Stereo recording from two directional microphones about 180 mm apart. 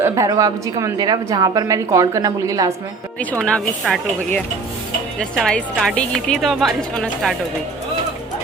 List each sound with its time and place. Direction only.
0.0 s a woman's voice: 15° right (ahead or behind)
3.4 s a woman's voice: 5° left (ahead or behind)
5.4 s a woman's voice: 5° left (ahead or behind)